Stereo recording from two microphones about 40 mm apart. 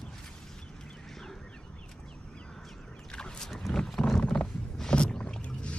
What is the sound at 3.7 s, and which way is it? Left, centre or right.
Clip-clop, centre.